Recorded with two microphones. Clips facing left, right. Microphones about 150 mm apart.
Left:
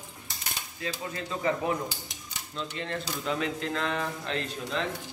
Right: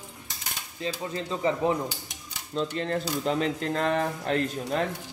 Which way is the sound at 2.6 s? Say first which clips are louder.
Right 7 dB; 35° right (ahead or behind).